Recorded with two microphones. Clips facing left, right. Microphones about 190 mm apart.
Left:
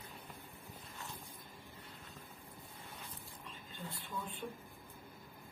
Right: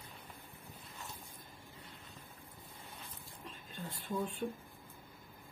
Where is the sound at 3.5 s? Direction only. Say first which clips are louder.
Right 2 dB; 45° right (ahead or behind).